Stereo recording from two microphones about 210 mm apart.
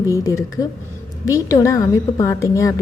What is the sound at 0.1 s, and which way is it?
A woman's voice, 15° left (ahead or behind).